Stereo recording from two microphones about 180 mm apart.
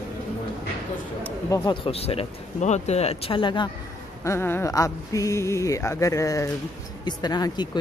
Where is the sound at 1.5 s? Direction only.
30° left (ahead or behind).